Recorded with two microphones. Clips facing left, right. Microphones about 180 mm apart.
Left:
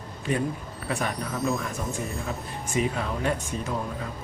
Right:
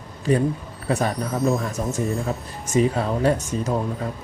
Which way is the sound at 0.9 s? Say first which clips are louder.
Right 6 dB; 40° right (ahead or behind).